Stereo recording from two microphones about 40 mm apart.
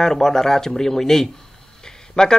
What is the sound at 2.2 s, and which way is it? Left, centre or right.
Speech, left.